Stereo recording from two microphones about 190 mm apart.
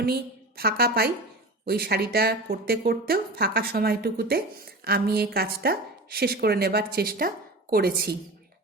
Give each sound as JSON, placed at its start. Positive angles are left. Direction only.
{"t": 0.0, "sound": "a woman's voice", "side_deg": -55}